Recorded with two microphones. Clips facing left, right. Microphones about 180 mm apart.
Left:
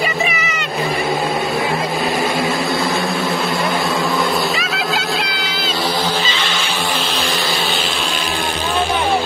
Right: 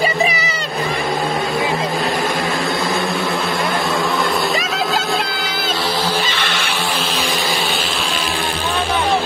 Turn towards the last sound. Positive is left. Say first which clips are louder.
# even
turn(degrees=0)  # may be behind; listen again after turning